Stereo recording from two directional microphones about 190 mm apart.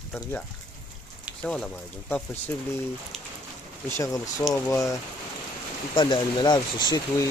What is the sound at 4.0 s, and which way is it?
Speech, 20° left (ahead or behind).